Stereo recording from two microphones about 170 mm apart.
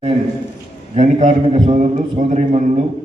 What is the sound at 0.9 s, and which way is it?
A man's voice, 40° right (ahead or behind).